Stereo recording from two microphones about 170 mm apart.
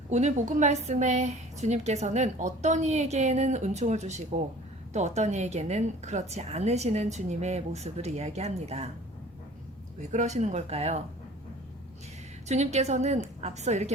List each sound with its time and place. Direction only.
0.1 s a woman's voice: 45° right (ahead or behind)
10.0 s a woman's voice: 45° right (ahead or behind)
12.5 s a woman's voice: 40° right (ahead or behind)